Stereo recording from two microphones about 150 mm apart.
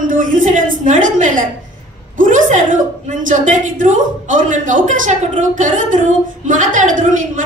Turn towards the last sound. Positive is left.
turn(degrees=-60)  # may be behind; listen again after turning